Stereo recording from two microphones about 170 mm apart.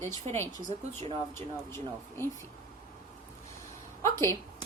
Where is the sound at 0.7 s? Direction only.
40° right (ahead or behind).